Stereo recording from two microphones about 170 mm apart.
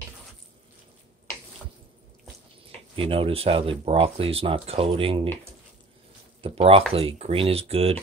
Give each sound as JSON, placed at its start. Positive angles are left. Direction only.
{"t": 3.0, "sound": "speech", "side_deg": -30}
{"t": 6.4, "sound": "speech", "side_deg": -35}